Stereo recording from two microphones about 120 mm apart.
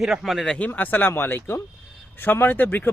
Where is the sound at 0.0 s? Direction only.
Centre (ahead or behind).